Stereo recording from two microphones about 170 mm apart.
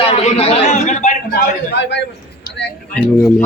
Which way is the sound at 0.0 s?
35° left (ahead or behind).